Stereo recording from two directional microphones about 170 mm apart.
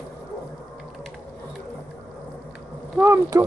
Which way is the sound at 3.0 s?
15° right (ahead or behind).